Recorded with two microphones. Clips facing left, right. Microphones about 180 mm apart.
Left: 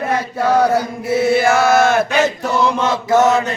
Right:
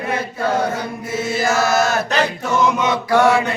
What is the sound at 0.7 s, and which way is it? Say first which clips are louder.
Chant: left 7 dB; 65° left (ahead or behind).